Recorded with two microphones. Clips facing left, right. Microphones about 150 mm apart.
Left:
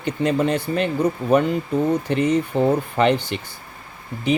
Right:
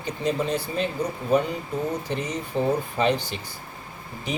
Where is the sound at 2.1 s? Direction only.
60° left (ahead or behind).